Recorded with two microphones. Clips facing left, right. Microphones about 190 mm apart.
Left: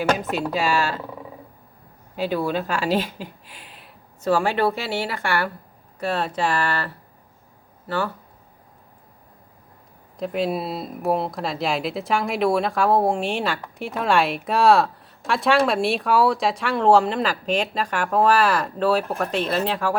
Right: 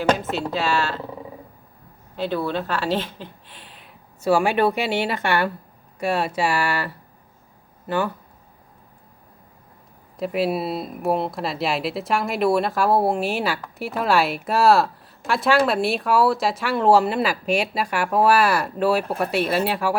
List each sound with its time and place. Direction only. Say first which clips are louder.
0.2 s speech: left 1 dB; 15° left (ahead or behind)
2.1 s speech: left 1 dB; 10° left (ahead or behind)
4.2 s a woman's voice: right 2 dB; 10° right (ahead or behind)
10.2 s speech: right 1 dB; 5° right (ahead or behind)